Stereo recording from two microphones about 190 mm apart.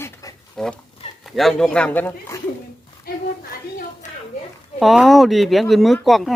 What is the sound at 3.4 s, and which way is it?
Speech, 50° left (ahead or behind).